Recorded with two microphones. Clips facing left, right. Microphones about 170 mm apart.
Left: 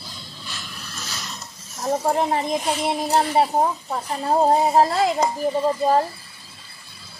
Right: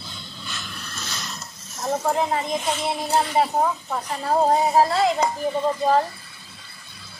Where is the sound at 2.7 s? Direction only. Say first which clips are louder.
Left 2 dB; 15° left (ahead or behind).